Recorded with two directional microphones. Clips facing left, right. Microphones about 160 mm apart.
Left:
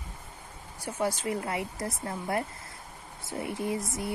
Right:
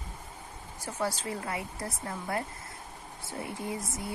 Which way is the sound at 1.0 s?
20° left (ahead or behind).